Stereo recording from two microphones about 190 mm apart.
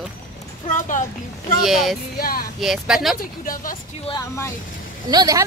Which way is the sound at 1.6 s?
Centre (ahead or behind).